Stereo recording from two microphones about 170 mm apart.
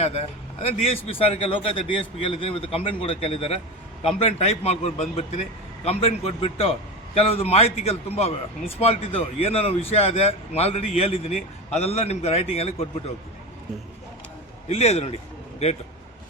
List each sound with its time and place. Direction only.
0.0 s a man's voice: 35° left (ahead or behind)
14.7 s a man's voice: 40° left (ahead or behind)